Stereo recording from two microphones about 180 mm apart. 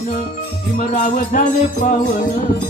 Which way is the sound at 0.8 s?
45° left (ahead or behind).